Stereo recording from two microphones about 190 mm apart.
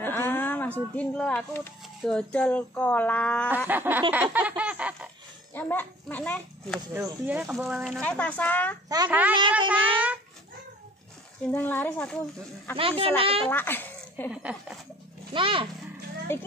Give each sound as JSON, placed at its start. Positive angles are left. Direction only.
{"t": 0.0, "sound": "a sound", "side_deg": 10}
{"t": 0.9, "sound": "speech", "side_deg": 5}
{"t": 3.6, "sound": "a sound", "side_deg": -10}
{"t": 5.5, "sound": "a child's voice", "side_deg": 10}
{"t": 6.8, "sound": "speech", "side_deg": -20}
{"t": 8.8, "sound": "speech", "side_deg": -20}
{"t": 9.7, "sound": "a sound", "side_deg": -10}
{"t": 11.5, "sound": "speech", "side_deg": 10}
{"t": 12.7, "sound": "speech", "side_deg": -30}
{"t": 13.5, "sound": "speech", "side_deg": 10}
{"t": 14.3, "sound": "speech", "side_deg": -5}
{"t": 15.3, "sound": "speech", "side_deg": -25}
{"t": 16.3, "sound": "speech", "side_deg": 10}